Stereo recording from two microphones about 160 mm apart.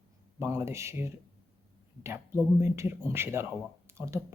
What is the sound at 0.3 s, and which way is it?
Speech, 15° right (ahead or behind).